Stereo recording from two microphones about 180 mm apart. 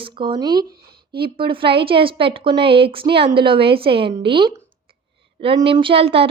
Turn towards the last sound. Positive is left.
turn(degrees=-30)  # may be behind; listen again after turning